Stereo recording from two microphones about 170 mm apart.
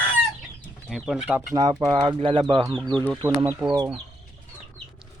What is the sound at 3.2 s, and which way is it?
Speech, 15° right (ahead or behind).